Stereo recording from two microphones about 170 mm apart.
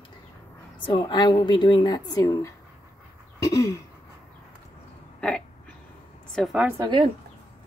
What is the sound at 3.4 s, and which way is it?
Throat clearing, 15° left (ahead or behind).